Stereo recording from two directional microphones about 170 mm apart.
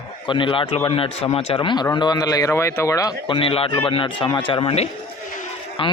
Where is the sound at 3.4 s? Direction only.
30° left (ahead or behind).